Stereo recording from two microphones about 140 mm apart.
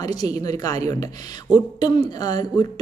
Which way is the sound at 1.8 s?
25° left (ahead or behind).